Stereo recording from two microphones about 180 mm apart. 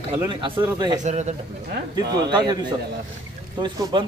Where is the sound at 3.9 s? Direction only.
25° right (ahead or behind).